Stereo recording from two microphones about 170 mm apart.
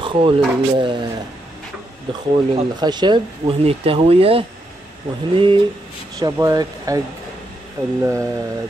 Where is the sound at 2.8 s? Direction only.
25° right (ahead or behind).